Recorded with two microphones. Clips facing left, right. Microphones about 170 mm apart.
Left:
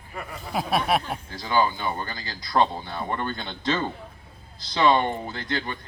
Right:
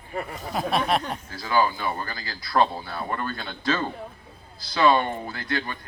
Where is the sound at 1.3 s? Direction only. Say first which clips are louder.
Even; 20° left (ahead or behind).